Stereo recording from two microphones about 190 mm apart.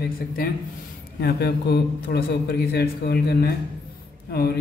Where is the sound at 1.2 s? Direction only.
55° left (ahead or behind).